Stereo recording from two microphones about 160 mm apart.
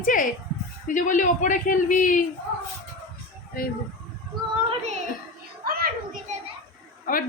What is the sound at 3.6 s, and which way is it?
Speech, 70° left (ahead or behind).